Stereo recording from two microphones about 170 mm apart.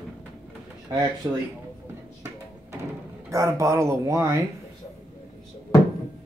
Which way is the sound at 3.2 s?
20° right (ahead or behind).